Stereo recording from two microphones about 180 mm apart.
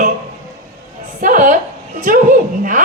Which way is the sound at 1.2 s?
45° right (ahead or behind).